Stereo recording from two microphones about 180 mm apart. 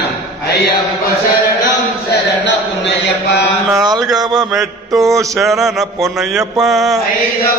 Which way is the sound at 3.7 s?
20° right (ahead or behind).